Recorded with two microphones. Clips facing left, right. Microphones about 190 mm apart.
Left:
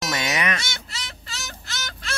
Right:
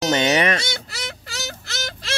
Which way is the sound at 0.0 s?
30° right (ahead or behind).